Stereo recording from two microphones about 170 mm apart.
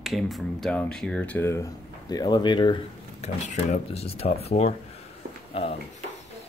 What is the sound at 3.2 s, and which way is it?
Speech, 45° left (ahead or behind).